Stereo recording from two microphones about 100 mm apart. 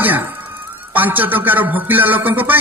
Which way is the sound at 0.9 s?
20° right (ahead or behind).